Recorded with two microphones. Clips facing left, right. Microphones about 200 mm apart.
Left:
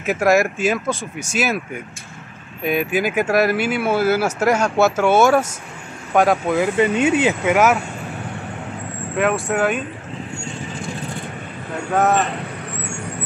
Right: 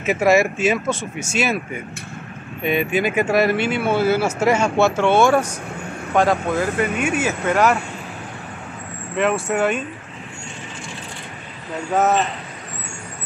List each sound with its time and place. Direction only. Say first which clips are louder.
0.0 s speech: even; centre (ahead or behind)
6.8 s speech: left 5 dB; 20° left (ahead or behind)
7.4 s speech: right 1 dB; 5° left (ahead or behind)
9.2 s speech: even; centre (ahead or behind)
11.9 s speech: left 1 dB; 5° right (ahead or behind)